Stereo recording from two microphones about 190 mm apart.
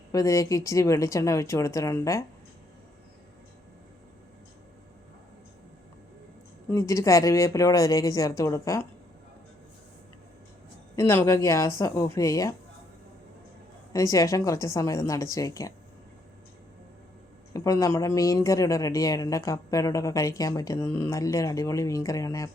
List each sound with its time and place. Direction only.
0.1 s speech: 15° left (ahead or behind)
6.7 s speech: 15° left (ahead or behind)
10.9 s speech: 15° left (ahead or behind)
13.9 s speech: 15° left (ahead or behind)
17.5 s speech: 15° left (ahead or behind)